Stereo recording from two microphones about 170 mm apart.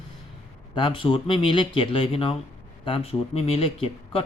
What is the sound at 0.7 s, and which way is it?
A man's voice, 30° left (ahead or behind).